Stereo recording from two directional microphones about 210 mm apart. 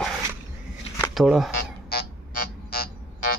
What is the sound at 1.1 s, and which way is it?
Speech, centre (ahead or behind).